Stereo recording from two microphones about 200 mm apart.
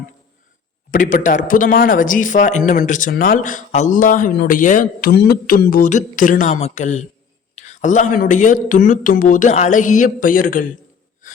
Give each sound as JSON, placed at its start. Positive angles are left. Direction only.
{"t": 0.9, "sound": "speech", "side_deg": 40}